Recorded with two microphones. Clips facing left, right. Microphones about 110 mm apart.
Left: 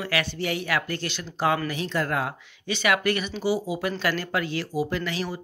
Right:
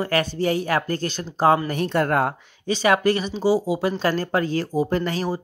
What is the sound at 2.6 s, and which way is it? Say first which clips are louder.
Speech: right 5 dB; 35° right (ahead or behind).